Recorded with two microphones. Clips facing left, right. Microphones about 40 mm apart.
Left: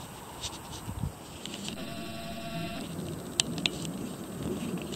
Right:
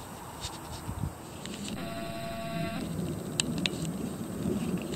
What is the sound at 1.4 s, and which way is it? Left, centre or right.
Printer, left.